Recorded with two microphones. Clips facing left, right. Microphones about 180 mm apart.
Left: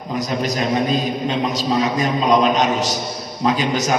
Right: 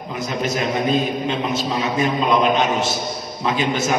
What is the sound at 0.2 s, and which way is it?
A man's voice, 35° left (ahead or behind).